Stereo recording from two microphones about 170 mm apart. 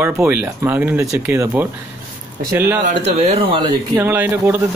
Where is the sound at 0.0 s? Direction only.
10° right (ahead or behind).